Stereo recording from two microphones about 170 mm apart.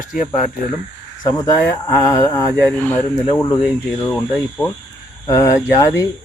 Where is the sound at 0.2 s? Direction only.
50° left (ahead or behind).